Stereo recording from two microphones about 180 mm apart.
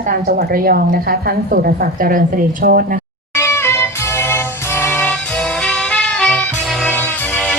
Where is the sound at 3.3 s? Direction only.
15° left (ahead or behind).